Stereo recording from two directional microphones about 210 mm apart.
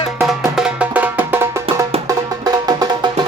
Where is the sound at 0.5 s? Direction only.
5° right (ahead or behind).